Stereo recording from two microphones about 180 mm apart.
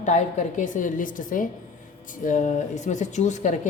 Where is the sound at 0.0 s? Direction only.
40° left (ahead or behind).